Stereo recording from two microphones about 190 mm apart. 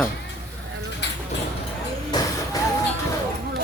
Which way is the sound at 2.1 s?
20° left (ahead or behind).